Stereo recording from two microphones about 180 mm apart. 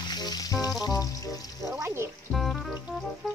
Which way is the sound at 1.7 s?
15° right (ahead or behind).